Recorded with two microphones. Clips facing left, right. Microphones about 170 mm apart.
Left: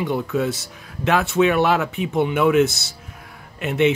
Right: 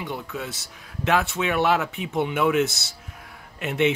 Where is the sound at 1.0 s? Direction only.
60° left (ahead or behind).